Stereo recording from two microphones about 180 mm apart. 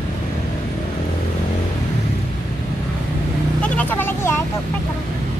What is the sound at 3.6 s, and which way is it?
Vehicle, 5° left (ahead or behind).